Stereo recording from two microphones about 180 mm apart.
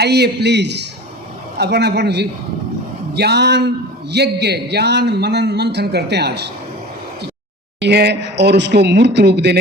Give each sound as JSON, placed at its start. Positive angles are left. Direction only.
{"t": 0.0, "sound": "a man's voice", "side_deg": -65}
{"t": 7.8, "sound": "a man's voice", "side_deg": -65}